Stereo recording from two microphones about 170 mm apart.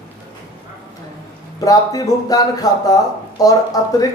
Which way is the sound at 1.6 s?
20° left (ahead or behind).